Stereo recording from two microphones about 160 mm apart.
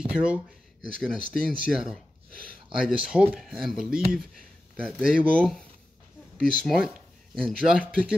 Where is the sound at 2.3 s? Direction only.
60° left (ahead or behind).